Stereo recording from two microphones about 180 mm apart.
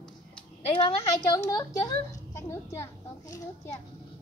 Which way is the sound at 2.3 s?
15° left (ahead or behind).